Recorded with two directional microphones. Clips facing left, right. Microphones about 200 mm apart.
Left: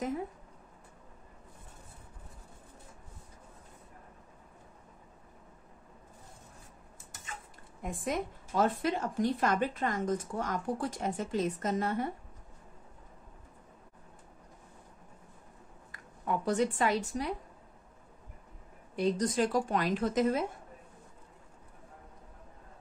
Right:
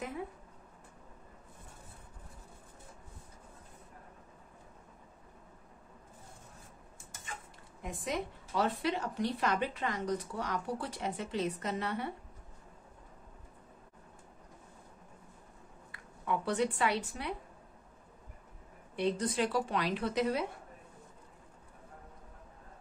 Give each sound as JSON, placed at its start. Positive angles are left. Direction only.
{"t": 7.8, "sound": "a woman's voice", "side_deg": 50}
{"t": 15.9, "sound": "speech", "side_deg": 45}
{"t": 18.9, "sound": "a woman's voice", "side_deg": 40}